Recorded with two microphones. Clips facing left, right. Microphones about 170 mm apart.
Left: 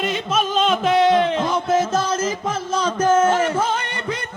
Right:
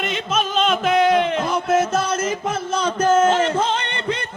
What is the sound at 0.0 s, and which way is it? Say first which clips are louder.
Music: left 1 dB; centre (ahead or behind).